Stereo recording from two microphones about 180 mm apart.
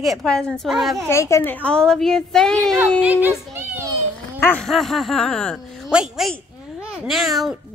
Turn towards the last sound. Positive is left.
turn(degrees=0)  # may be behind; listen again after turning